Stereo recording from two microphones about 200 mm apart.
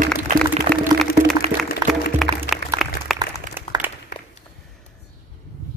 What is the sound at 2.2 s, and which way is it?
Music, centre (ahead or behind).